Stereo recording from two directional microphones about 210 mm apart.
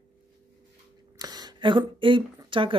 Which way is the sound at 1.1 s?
20° right (ahead or behind).